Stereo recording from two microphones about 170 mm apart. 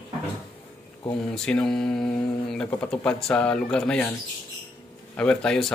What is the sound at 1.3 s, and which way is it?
Speech, 5° left (ahead or behind).